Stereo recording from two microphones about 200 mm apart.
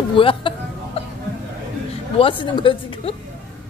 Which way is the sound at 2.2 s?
25° left (ahead or behind).